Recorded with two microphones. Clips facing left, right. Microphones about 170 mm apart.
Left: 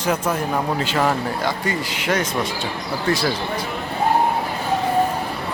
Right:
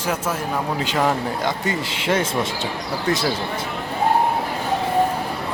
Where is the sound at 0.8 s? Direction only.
15° right (ahead or behind).